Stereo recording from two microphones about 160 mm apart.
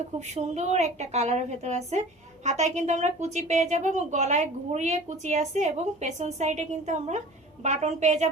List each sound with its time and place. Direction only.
0.3 s a woman's voice: 45° right (ahead or behind)